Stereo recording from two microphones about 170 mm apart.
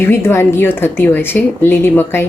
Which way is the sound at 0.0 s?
15° left (ahead or behind).